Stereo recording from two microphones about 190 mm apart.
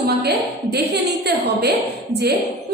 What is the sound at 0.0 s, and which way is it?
Speech, 60° right (ahead or behind).